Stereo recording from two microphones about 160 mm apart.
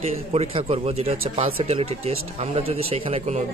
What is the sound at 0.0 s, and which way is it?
A man's voice, 40° right (ahead or behind).